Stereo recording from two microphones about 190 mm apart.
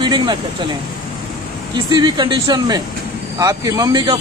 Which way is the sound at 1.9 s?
20° right (ahead or behind).